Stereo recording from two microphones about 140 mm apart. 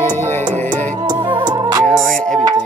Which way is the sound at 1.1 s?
35° right (ahead or behind).